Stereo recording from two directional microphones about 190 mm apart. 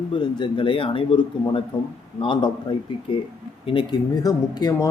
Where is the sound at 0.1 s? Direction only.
25° left (ahead or behind).